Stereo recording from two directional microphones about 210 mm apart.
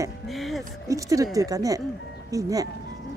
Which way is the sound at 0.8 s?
15° right (ahead or behind).